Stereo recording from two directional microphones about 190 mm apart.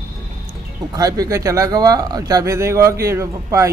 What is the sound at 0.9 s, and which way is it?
Speech, 20° right (ahead or behind).